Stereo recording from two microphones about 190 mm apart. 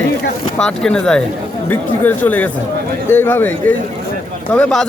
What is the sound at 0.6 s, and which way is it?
Speech, 5° left (ahead or behind).